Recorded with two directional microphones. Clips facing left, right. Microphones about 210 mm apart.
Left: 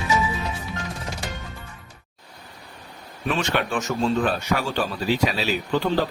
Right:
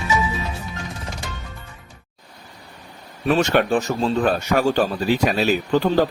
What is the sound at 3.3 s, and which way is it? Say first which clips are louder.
Speech: right 7 dB; 40° right (ahead or behind).